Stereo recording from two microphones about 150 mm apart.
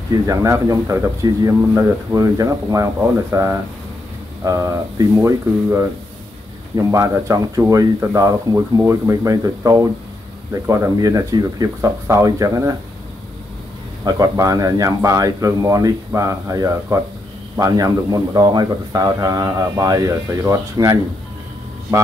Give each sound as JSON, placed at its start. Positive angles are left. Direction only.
{"t": 0.3, "sound": "a man's voice", "side_deg": -20}
{"t": 14.0, "sound": "a man's voice", "side_deg": -25}